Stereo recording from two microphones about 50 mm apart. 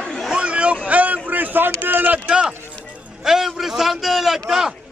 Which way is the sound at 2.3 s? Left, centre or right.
Centre.